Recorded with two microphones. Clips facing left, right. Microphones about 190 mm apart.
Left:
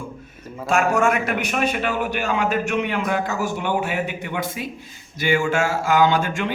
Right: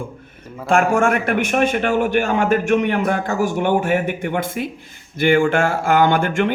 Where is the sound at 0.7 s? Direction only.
55° right (ahead or behind).